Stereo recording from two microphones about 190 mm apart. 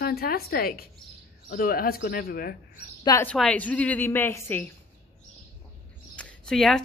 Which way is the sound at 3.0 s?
20° left (ahead or behind).